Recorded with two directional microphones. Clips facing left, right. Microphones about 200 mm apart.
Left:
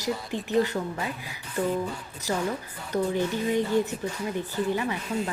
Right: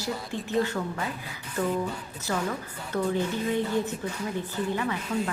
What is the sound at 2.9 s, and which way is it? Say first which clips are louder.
Speech: left 1 dB; 15° left (ahead or behind).